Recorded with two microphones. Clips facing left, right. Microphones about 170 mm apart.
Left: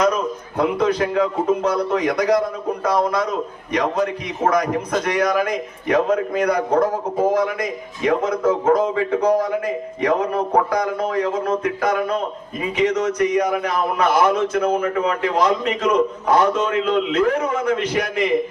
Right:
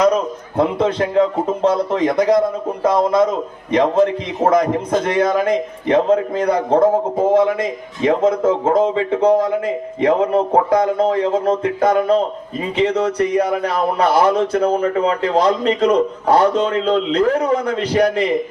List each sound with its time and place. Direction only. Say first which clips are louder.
0.0 s a man's voice: right 4 dB; 30° right (ahead or behind)